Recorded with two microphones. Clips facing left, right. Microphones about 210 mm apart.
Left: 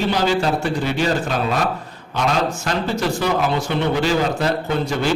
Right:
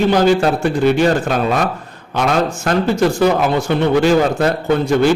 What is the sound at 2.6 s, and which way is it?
A man's voice, 50° right (ahead or behind).